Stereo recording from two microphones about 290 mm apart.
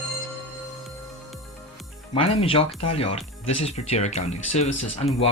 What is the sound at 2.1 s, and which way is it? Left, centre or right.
Speech, centre.